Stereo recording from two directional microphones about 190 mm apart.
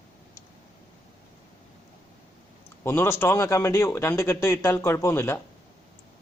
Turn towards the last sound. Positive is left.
turn(degrees=15)  # may be behind; listen again after turning